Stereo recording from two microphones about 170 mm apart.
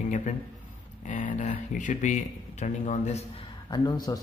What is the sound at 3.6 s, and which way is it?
Speech, 25° left (ahead or behind).